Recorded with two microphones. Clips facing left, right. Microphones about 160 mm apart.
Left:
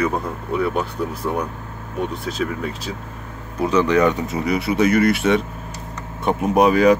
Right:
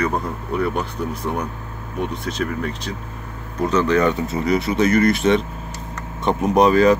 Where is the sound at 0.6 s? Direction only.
Centre (ahead or behind).